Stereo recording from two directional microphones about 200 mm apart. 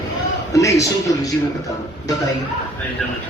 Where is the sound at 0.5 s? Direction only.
15° left (ahead or behind).